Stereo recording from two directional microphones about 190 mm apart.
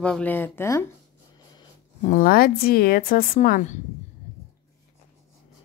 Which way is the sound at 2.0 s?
45° left (ahead or behind).